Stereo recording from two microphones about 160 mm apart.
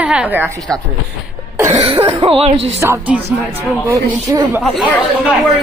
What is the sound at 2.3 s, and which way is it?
Speech, 40° right (ahead or behind).